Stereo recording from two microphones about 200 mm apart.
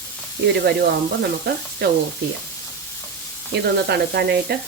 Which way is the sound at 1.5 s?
50° right (ahead or behind).